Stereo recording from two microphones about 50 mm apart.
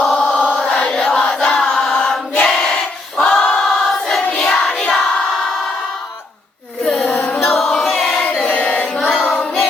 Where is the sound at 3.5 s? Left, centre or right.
Centre.